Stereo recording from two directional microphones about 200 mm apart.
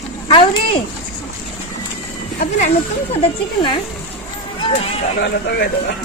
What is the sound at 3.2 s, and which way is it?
Speech, 30° left (ahead or behind).